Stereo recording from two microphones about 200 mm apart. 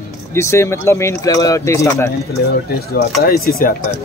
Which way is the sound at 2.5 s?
50° left (ahead or behind).